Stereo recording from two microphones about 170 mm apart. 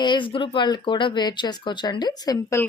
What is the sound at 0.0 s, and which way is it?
Speech, 30° left (ahead or behind).